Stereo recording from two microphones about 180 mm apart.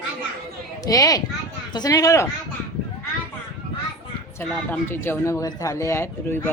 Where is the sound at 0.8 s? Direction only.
20° left (ahead or behind).